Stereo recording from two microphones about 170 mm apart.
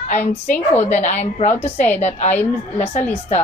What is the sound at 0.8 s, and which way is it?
A woman's voice, 40° left (ahead or behind).